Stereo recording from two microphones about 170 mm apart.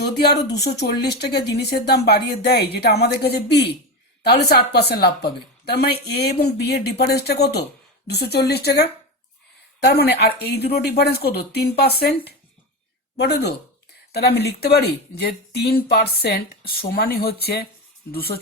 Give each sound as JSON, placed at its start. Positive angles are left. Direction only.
{"t": 0.0, "sound": "speech", "side_deg": 75}